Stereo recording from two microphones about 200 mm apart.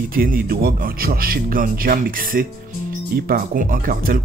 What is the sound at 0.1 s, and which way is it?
Speech, 45° right (ahead or behind).